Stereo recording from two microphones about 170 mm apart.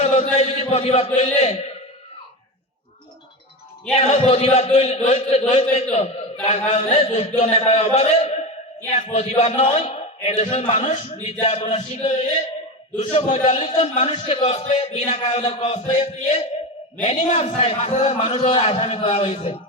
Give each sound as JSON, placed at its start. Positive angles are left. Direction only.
{"t": 0.0, "sound": "chant", "side_deg": 40}
{"t": 1.1, "sound": "a man's voice", "side_deg": 40}
{"t": 3.9, "sound": "a man's voice", "side_deg": 35}